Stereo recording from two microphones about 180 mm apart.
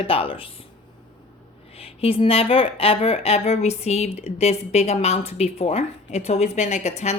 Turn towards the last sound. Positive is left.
turn(degrees=40)  # may be behind; listen again after turning